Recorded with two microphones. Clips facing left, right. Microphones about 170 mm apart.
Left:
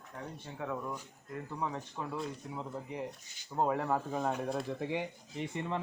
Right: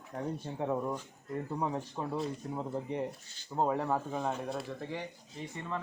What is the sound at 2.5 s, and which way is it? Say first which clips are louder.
Speech: right 4 dB; 45° right (ahead or behind).